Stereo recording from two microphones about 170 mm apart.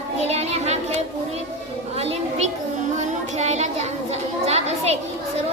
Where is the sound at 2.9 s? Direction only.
40° right (ahead or behind).